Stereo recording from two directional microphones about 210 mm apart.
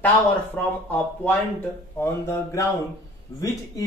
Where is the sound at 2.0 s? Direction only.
10° left (ahead or behind).